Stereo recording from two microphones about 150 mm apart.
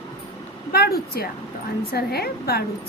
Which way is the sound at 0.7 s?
90° left.